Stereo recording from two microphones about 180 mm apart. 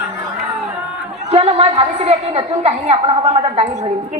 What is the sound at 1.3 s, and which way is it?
A woman's voice, 35° right (ahead or behind).